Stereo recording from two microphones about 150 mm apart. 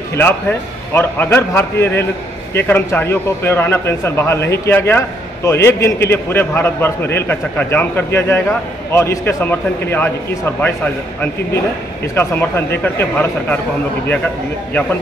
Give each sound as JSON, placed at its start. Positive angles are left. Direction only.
{"t": 0.1, "sound": "a man's voice", "side_deg": 15}
{"t": 12.2, "sound": "a man's voice", "side_deg": 15}
{"t": 14.7, "sound": "a man's voice", "side_deg": 10}